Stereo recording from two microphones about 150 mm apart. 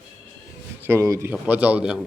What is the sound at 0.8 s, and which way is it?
Speech, 15° right (ahead or behind).